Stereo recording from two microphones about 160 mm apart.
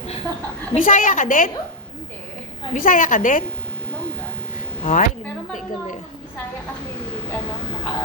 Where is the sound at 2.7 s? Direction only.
60° left (ahead or behind).